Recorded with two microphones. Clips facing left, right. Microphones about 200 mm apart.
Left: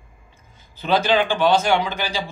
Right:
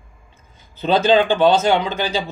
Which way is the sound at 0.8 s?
25° right (ahead or behind).